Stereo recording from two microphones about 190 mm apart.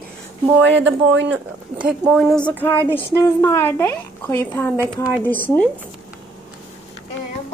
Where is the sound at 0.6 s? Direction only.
75° right (ahead or behind).